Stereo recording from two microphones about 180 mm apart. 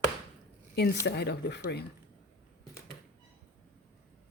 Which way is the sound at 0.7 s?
70° left (ahead or behind).